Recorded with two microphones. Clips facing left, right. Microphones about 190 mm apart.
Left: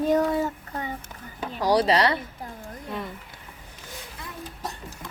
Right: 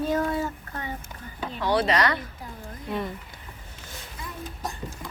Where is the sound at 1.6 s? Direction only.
35° left (ahead or behind).